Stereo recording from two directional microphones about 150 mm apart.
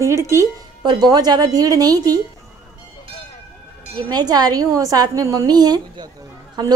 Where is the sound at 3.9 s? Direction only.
25° right (ahead or behind).